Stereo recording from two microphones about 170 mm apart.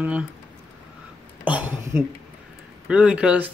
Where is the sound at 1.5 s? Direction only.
10° right (ahead or behind).